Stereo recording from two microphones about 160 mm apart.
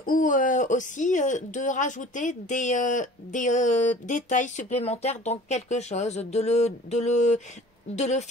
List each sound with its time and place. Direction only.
0.0 s speech: 60° left (ahead or behind)